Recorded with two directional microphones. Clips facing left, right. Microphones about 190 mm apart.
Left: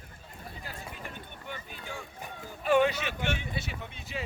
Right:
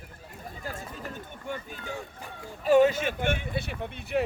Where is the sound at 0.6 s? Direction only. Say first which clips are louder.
Right 8 dB; 45° right (ahead or behind).